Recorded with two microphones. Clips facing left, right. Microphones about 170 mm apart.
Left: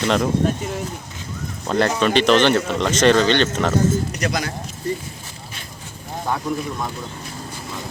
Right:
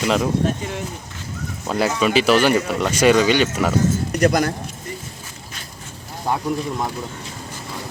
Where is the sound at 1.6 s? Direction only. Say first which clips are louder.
Left 1 dB; 5° right (ahead or behind).